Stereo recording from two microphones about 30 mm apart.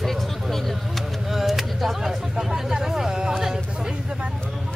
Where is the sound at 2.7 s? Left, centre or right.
Centre.